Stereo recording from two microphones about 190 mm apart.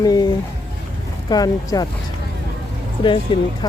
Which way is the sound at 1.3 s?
20° left (ahead or behind).